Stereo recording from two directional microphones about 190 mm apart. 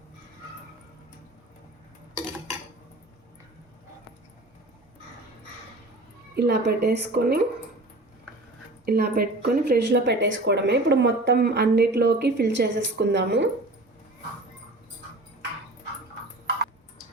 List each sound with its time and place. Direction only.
6.3 s a woman's voice: 60° right (ahead or behind)
8.9 s a woman's voice: 55° right (ahead or behind)